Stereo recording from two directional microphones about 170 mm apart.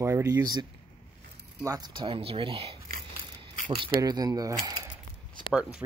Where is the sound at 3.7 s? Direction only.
25° right (ahead or behind).